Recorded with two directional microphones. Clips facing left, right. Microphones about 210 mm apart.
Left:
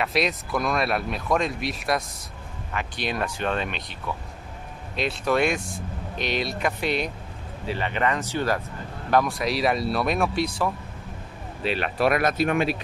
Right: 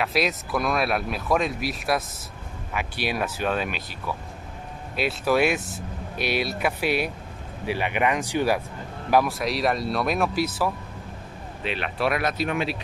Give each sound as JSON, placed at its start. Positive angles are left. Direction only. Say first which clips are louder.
{"t": 0.0, "sound": "speech", "louder": "even", "side_deg": 0}
{"t": 4.9, "sound": "speech", "louder": "right 1 dB", "side_deg": -5}
{"t": 11.6, "sound": "speech", "louder": "left 3 dB", "side_deg": 40}